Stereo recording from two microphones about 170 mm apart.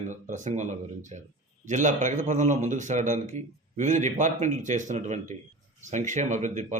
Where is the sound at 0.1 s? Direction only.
45° right (ahead or behind).